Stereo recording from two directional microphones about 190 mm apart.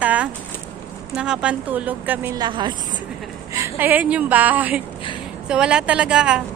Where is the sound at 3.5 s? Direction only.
10° right (ahead or behind).